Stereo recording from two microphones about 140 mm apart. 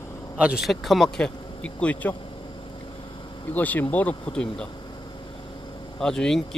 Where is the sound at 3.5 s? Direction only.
10° left (ahead or behind).